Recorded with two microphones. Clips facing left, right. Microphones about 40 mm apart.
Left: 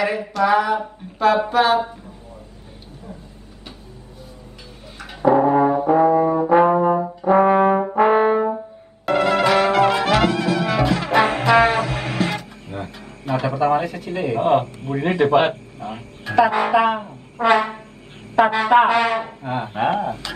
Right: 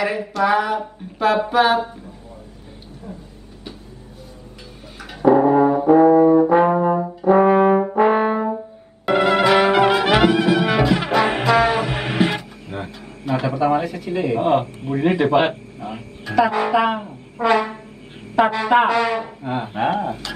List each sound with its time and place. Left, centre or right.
0.0 s speech: centre
5.2 s brass instrument: centre
9.0 s trumpet: centre
9.9 s brass instrument: centre
11.4 s music: centre
11.8 s music: centre
12.7 s a sound: centre
13.3 s speech: centre
17.4 s a sound: centre
18.4 s speech: centre
18.9 s speech: centre
19.4 s speech: centre